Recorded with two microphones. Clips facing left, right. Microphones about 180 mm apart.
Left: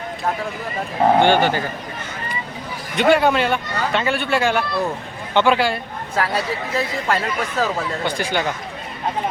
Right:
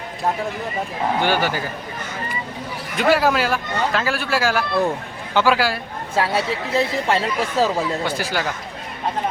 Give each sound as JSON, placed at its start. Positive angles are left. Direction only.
{"t": 1.2, "sound": "a man's voice", "side_deg": -10}
{"t": 2.9, "sound": "speech", "side_deg": 0}
{"t": 6.1, "sound": "speech", "side_deg": -25}
{"t": 8.0, "sound": "speech", "side_deg": -5}